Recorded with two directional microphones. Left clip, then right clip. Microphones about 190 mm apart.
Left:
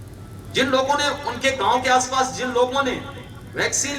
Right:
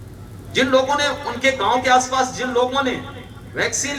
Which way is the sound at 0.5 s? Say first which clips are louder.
Right 2 dB; 55° left (ahead or behind).